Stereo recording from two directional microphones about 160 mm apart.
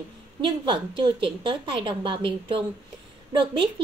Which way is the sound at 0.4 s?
30° right (ahead or behind).